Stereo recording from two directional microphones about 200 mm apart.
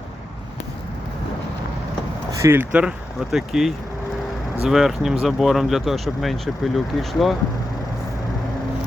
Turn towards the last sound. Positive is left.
turn(degrees=0)  # may be behind; listen again after turning